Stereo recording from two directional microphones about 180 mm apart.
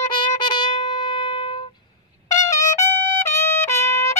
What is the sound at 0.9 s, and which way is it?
Music, 25° left (ahead or behind).